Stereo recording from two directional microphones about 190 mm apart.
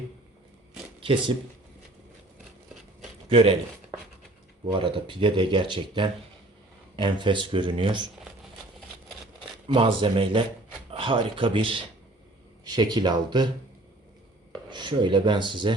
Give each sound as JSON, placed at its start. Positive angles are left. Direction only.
{"t": 3.2, "sound": "speech", "side_deg": -30}
{"t": 4.8, "sound": "speech", "side_deg": -25}
{"t": 9.6, "sound": "speech", "side_deg": -25}
{"t": 14.7, "sound": "speech", "side_deg": -25}